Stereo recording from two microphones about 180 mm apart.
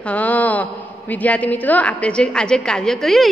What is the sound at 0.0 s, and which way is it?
A woman's voice, 10° left (ahead or behind).